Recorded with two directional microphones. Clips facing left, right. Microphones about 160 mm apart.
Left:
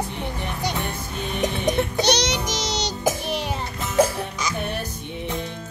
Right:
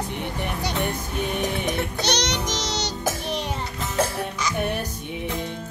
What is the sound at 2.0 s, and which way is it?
Child singing, 10° left (ahead or behind).